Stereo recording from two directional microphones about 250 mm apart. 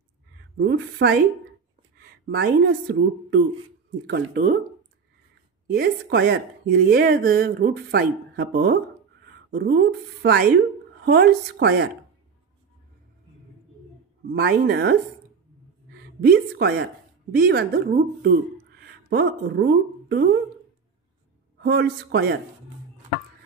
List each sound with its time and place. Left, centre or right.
0.6 s speech: right
2.2 s speech: right
5.7 s speech: right
14.3 s speech: right
16.3 s speech: right
21.5 s speech: right